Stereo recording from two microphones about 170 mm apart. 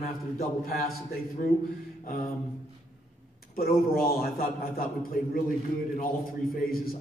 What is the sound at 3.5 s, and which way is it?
A man's voice, 60° left (ahead or behind).